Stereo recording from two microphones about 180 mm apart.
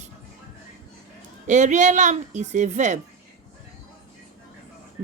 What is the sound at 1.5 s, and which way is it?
Speech, 40° right (ahead or behind).